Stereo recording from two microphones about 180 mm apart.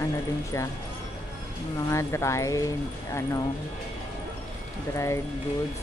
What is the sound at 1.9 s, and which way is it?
Speech, 15° left (ahead or behind).